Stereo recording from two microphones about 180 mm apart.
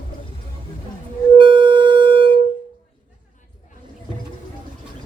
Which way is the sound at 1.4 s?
25° right (ahead or behind).